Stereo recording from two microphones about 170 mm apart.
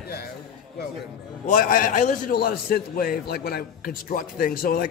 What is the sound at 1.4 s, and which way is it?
A man's voice, 55° left (ahead or behind).